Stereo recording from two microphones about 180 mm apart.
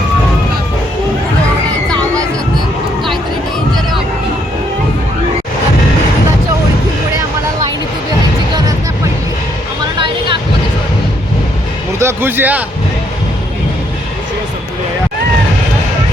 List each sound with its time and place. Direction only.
10.0 s vehicle: 30° right (ahead or behind)
11.9 s speech: 15° right (ahead or behind)